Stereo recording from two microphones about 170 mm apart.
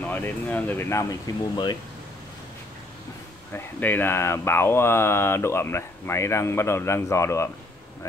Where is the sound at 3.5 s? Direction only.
10° left (ahead or behind).